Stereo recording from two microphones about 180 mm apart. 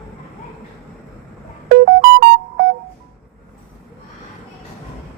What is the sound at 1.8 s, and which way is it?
Music, 50° right (ahead or behind).